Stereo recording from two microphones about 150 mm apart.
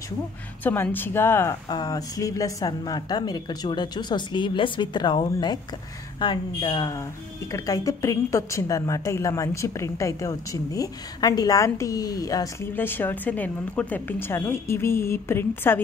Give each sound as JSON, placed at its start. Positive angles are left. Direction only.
{"t": 0.7, "sound": "a woman's voice", "side_deg": 10}
{"t": 1.7, "sound": "a woman's voice", "side_deg": 25}
{"t": 12.7, "sound": "a woman's voice", "side_deg": 15}